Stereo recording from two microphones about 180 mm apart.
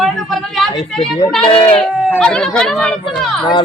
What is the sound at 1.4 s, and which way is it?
Speech, 30° left (ahead or behind).